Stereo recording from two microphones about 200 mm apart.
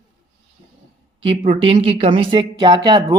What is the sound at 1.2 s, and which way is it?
Speech, 25° right (ahead or behind).